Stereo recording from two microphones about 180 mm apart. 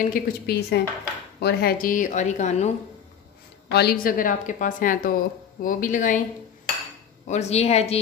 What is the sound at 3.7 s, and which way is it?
A woman's voice, 65° left (ahead or behind).